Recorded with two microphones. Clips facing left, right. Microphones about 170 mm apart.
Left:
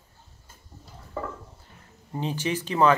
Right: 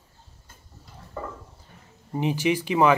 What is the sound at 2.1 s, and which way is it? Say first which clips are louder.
Speech: right 5 dB; 15° right (ahead or behind).